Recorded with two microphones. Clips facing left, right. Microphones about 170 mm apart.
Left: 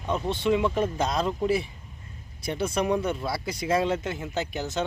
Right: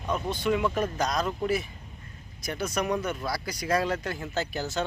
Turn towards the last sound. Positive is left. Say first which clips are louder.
# left 1 dB
turn(degrees=20)  # may be behind; listen again after turning